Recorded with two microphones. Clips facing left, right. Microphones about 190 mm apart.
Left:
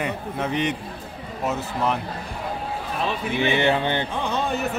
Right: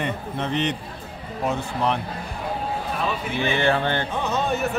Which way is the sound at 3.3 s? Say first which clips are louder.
Left 2 dB; 20° left (ahead or behind).